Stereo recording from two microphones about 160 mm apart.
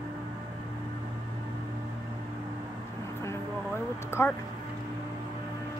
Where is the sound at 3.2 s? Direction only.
15° left (ahead or behind).